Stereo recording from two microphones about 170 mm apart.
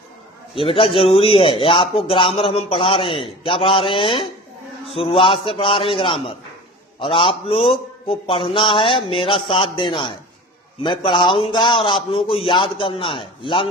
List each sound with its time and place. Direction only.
0.5 s a man's voice: 30° left (ahead or behind)